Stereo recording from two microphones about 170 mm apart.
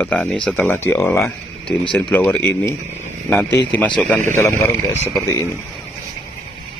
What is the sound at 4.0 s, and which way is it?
Speech, 10° left (ahead or behind).